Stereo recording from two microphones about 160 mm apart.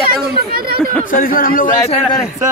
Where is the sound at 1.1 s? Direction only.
60° left (ahead or behind).